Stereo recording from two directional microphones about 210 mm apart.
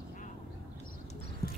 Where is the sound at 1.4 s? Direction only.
45° left (ahead or behind).